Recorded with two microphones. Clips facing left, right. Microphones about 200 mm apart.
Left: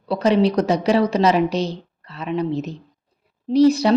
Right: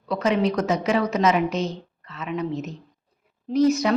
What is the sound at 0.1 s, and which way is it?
A woman's voice, 35° left (ahead or behind).